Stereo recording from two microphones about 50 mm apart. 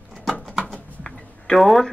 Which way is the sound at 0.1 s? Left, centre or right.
Centre.